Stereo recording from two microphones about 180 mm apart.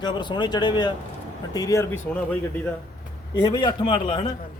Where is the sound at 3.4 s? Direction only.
25° left (ahead or behind).